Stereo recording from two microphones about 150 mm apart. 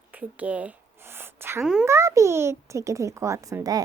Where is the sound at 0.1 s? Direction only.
10° right (ahead or behind).